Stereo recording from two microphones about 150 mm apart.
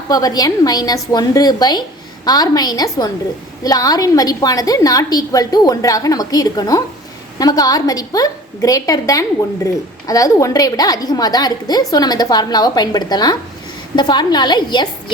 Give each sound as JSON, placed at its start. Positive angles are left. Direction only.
{"t": 0.1, "sound": "a woman's voice", "side_deg": 25}